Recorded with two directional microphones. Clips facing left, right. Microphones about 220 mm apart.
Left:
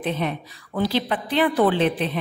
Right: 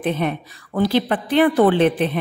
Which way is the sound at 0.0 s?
55° right (ahead or behind).